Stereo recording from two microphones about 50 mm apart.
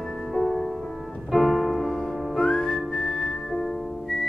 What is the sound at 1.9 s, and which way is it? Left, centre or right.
Music, centre.